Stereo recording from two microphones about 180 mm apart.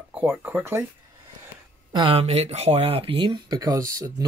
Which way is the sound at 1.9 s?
30° right (ahead or behind).